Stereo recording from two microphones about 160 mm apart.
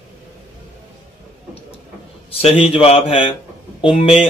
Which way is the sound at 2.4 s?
35° left (ahead or behind).